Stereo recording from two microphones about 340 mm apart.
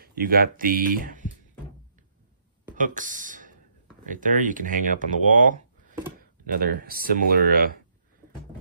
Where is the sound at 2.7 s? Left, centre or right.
Right.